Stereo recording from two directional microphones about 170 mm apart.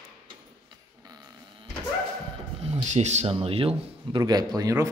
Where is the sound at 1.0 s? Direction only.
20° right (ahead or behind).